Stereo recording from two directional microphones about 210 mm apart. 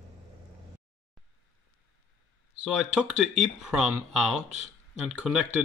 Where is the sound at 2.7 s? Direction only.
Centre (ahead or behind).